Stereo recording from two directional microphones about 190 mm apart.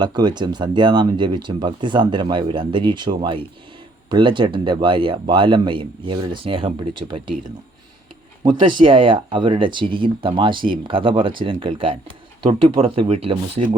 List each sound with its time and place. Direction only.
0.0 s speech: 20° right (ahead or behind)
8.4 s speech: 25° right (ahead or behind)